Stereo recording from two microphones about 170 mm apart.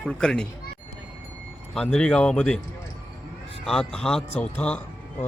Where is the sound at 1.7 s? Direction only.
5° left (ahead or behind).